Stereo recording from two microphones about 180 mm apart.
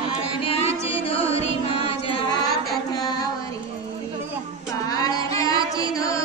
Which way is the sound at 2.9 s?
20° left (ahead or behind).